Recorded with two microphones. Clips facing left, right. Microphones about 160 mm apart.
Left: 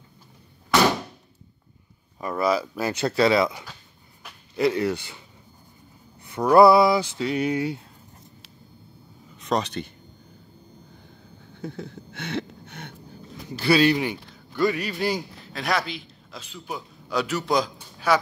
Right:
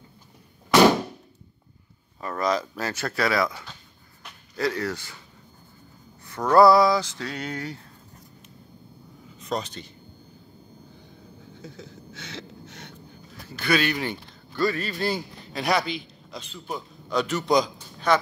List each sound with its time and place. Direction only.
2.1 s male singing: 10° left (ahead or behind)
4.6 s speech: 20° left (ahead or behind)
6.2 s male singing: 15° left (ahead or behind)
9.4 s speech: 75° left (ahead or behind)
11.5 s a sound: 60° left (ahead or behind)
13.6 s speech: 30° left (ahead or behind)
14.1 s speech: 15° left (ahead or behind)
15.4 s a man's voice: centre (ahead or behind)
17.7 s a sound: 10° left (ahead or behind)